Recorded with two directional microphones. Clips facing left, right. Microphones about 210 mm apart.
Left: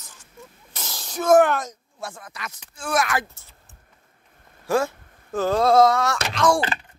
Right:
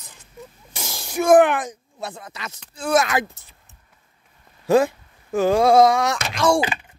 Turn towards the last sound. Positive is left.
turn(degrees=-10)  # may be behind; listen again after turning